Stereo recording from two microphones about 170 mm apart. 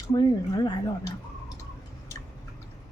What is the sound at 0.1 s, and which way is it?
Speech, 25° left (ahead or behind).